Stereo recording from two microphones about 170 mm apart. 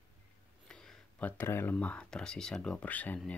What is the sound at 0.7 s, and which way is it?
Speech, 5° left (ahead or behind).